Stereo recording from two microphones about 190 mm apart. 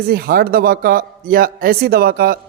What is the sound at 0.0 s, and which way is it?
A woman's voice, 50° right (ahead or behind).